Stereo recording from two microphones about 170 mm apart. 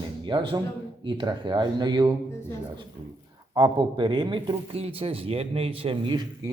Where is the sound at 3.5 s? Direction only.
25° right (ahead or behind).